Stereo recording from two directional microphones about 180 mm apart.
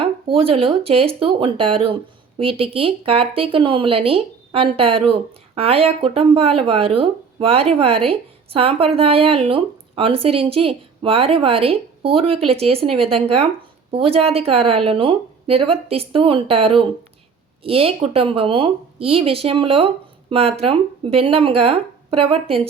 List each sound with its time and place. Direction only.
0.0 s speech: 30° right (ahead or behind)